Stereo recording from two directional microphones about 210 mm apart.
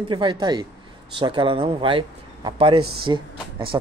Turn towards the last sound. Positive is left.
turn(degrees=-25)  # may be behind; listen again after turning